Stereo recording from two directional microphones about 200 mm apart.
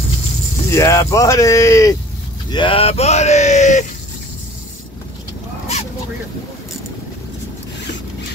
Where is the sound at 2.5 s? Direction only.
25° left (ahead or behind).